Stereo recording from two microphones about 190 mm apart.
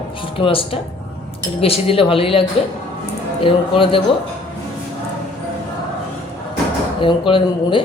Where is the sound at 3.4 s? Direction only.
25° left (ahead or behind).